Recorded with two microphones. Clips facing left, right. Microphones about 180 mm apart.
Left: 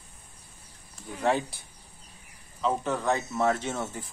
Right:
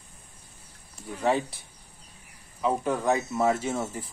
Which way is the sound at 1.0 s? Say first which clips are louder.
Right 1 dB; centre (ahead or behind).